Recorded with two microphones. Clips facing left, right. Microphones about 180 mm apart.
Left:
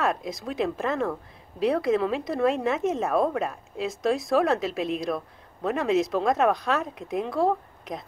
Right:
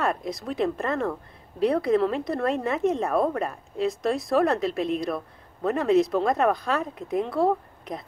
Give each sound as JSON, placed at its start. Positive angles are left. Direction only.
{"t": 0.0, "sound": "a woman's voice", "side_deg": 0}